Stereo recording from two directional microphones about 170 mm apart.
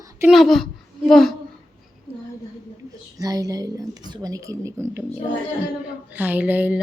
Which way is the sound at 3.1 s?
20° right (ahead or behind).